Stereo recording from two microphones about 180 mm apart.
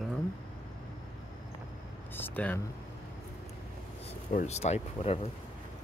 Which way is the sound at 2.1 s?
10° left (ahead or behind).